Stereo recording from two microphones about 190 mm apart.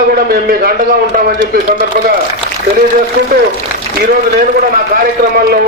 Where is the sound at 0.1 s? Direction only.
55° right (ahead or behind).